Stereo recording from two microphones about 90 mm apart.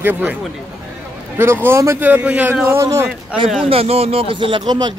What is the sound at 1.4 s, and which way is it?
Speech, 30° right (ahead or behind).